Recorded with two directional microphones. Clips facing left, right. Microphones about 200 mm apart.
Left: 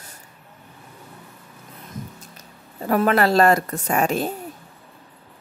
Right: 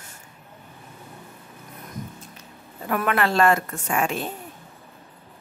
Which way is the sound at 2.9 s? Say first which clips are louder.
Left 5 dB; 35° left (ahead or behind).